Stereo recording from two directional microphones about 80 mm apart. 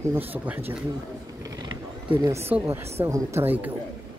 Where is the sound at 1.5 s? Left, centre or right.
Right.